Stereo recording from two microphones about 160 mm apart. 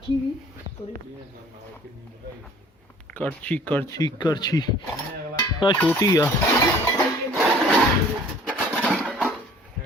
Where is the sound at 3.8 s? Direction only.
20° left (ahead or behind).